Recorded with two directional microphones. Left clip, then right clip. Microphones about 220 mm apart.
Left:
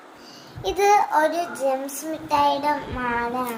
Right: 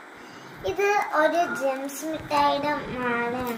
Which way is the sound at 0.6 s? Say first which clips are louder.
Left 5 dB; 35° left (ahead or behind).